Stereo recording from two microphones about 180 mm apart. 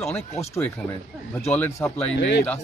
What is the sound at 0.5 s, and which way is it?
Speech, 15° left (ahead or behind).